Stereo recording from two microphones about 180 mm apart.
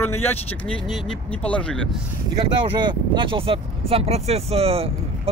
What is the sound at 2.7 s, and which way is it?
Speech, 25° right (ahead or behind).